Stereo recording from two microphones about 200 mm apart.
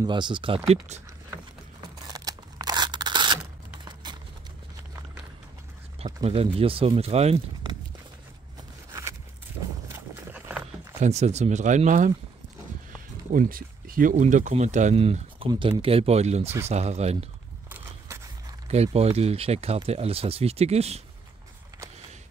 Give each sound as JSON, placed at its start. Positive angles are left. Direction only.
{"t": 0.0, "sound": "speech", "side_deg": -25}
{"t": 1.8, "sound": "scissors", "side_deg": -20}
{"t": 3.8, "sound": "a sound", "side_deg": -20}
{"t": 6.2, "sound": "speech", "side_deg": -30}
{"t": 10.3, "sound": "horse", "side_deg": -5}
{"t": 11.0, "sound": "speech", "side_deg": -35}
{"t": 13.3, "sound": "speech", "side_deg": -45}
{"t": 17.6, "sound": "horse", "side_deg": -10}
{"t": 18.7, "sound": "speech", "side_deg": -30}